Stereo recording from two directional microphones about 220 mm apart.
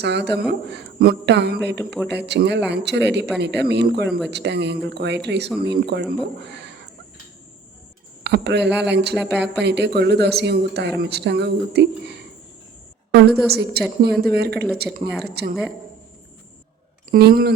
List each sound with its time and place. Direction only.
0.0 s speech: 50° right (ahead or behind)
6.4 s a sound: 50° right (ahead or behind)
8.2 s speech: 50° right (ahead or behind)
17.1 s speech: 45° right (ahead or behind)